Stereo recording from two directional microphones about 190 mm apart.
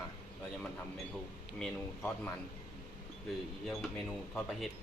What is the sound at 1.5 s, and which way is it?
Speech, 5° left (ahead or behind).